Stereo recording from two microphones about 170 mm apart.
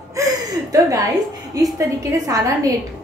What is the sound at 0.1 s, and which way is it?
A woman's voice, 20° right (ahead or behind).